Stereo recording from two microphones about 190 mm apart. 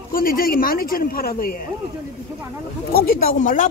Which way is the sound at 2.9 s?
50° left (ahead or behind).